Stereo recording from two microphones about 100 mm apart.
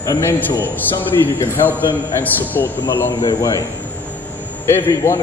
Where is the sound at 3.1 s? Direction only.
40° left (ahead or behind).